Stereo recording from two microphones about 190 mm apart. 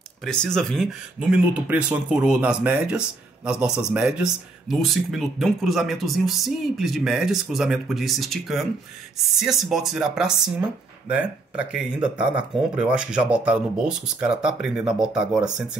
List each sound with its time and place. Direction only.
0.2 s speech: 5° left (ahead or behind)